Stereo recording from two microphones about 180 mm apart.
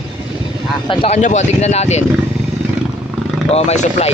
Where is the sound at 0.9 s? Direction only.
30° left (ahead or behind).